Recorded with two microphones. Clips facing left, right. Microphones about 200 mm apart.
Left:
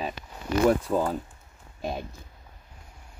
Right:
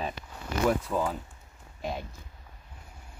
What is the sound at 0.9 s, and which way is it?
Speech, 20° left (ahead or behind).